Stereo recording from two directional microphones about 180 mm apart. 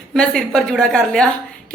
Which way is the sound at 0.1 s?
5° left (ahead or behind).